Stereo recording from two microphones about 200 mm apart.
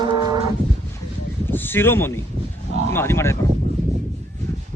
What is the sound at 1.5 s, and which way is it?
Speech, 10° left (ahead or behind).